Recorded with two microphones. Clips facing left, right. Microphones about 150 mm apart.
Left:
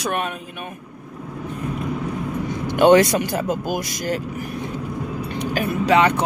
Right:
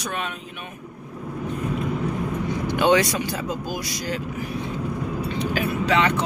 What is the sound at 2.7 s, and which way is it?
Speech, 50° left (ahead or behind).